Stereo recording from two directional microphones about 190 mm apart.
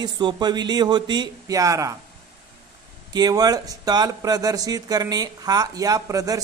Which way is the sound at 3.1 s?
20° right (ahead or behind).